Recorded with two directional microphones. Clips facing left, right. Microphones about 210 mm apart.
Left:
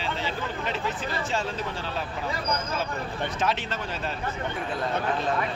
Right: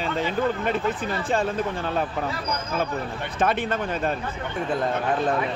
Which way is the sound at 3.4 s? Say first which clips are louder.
Right 8 dB; 55° right (ahead or behind).